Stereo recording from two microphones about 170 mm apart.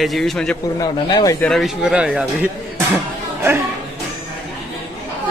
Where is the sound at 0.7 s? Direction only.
20° left (ahead or behind).